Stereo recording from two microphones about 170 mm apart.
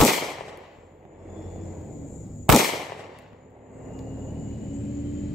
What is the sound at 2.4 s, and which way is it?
Firecracker, centre (ahead or behind).